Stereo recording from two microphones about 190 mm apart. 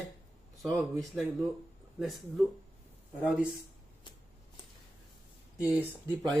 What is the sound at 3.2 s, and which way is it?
Speech, 5° right (ahead or behind).